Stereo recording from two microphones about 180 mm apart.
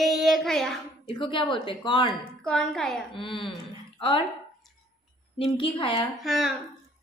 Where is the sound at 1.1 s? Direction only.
25° left (ahead or behind).